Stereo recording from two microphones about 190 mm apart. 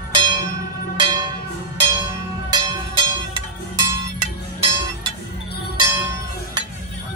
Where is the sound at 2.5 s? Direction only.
25° right (ahead or behind).